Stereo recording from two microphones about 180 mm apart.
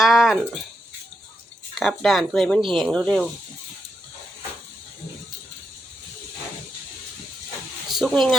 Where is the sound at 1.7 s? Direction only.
Centre (ahead or behind).